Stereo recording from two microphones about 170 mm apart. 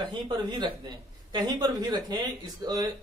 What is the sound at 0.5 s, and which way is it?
Speech, 25° right (ahead or behind).